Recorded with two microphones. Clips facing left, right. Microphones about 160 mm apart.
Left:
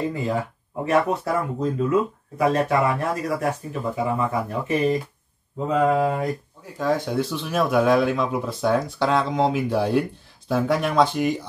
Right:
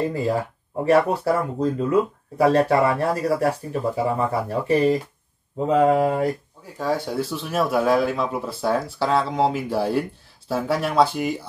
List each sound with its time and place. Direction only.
0.1 s speech: 35° right (ahead or behind)
5.7 s mantra: 30° right (ahead or behind)
6.8 s speech: 5° right (ahead or behind)